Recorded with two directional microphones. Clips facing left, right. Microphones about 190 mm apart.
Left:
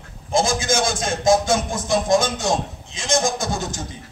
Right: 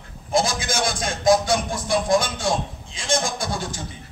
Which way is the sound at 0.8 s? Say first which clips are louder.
Right 2 dB; 25° left (ahead or behind).